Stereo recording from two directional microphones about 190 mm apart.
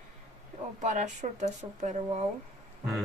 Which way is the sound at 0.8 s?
40° right (ahead or behind).